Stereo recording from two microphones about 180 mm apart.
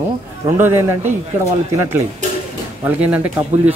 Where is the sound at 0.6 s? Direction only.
10° right (ahead or behind).